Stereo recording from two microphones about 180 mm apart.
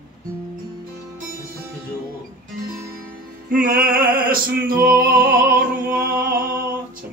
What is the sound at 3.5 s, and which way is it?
Music, 50° right (ahead or behind).